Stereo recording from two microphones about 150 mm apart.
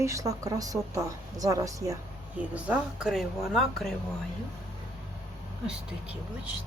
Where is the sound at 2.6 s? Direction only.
5° right (ahead or behind).